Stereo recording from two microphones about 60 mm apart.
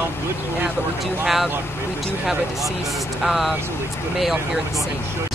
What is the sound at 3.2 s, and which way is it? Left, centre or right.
Speech, centre.